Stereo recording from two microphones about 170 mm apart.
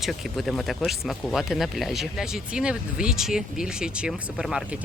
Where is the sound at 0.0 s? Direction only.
Centre (ahead or behind).